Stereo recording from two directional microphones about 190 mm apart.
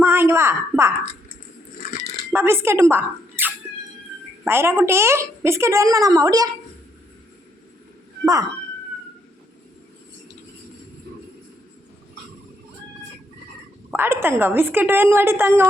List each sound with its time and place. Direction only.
0.0 s a sound: 10° right (ahead or behind)
2.3 s a woman's voice: 15° right (ahead or behind)
8.2 s a woman's voice: 15° right (ahead or behind)
13.9 s a woman's voice: 10° right (ahead or behind)